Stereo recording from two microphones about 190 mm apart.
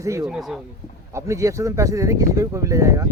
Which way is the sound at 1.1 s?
15° right (ahead or behind).